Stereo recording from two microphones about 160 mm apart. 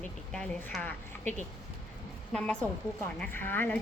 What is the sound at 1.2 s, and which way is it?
Speech, 50° right (ahead or behind).